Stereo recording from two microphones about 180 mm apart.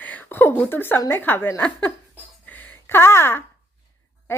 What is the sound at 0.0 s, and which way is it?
A woman's voice, 10° left (ahead or behind).